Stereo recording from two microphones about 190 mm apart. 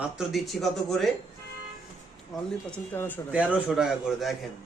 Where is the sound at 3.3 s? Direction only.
5° right (ahead or behind).